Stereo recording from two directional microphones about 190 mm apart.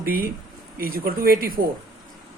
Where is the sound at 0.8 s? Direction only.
50° right (ahead or behind).